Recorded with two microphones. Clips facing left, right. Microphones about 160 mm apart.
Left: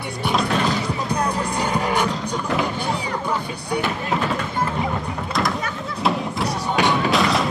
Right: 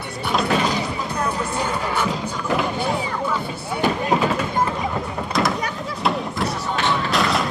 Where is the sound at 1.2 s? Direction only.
15° left (ahead or behind).